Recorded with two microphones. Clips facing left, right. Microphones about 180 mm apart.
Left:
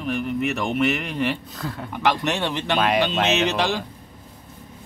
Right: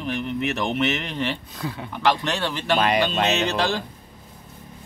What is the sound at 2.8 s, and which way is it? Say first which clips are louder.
Speech: left 2 dB; centre (ahead or behind).